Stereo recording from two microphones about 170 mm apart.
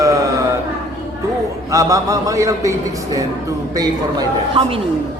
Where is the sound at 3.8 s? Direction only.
25° right (ahead or behind).